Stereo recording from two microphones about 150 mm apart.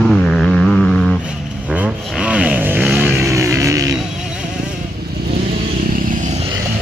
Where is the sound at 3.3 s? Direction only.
20° right (ahead or behind).